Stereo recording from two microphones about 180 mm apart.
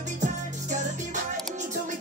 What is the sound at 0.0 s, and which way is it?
Music, 40° right (ahead or behind).